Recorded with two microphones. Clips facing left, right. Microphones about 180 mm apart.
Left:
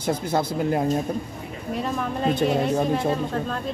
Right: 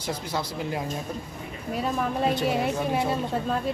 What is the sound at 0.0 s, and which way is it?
Speech, 50° left (ahead or behind).